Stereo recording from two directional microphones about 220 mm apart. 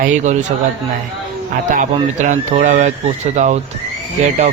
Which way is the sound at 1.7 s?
35° right (ahead or behind).